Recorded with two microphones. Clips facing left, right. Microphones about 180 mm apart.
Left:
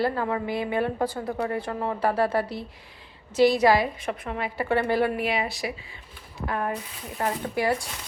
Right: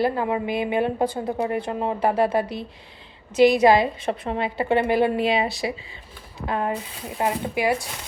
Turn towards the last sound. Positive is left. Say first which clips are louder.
# right 2 dB
turn(degrees=-15)  # may be behind; listen again after turning